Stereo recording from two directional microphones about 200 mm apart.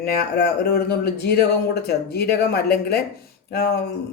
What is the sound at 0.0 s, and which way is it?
Speech, 50° left (ahead or behind).